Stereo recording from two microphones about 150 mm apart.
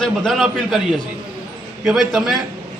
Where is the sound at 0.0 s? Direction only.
5° left (ahead or behind).